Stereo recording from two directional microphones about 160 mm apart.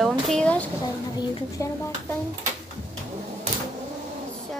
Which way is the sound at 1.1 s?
20° left (ahead or behind).